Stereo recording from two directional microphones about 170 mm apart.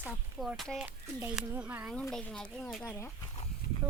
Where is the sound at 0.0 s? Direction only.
Centre (ahead or behind).